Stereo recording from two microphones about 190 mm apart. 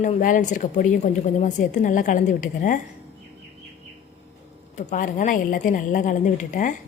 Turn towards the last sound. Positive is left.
turn(degrees=40)  # may be behind; listen again after turning